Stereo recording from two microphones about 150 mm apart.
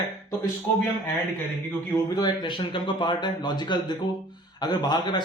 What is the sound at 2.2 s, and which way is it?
A man's voice, 35° left (ahead or behind).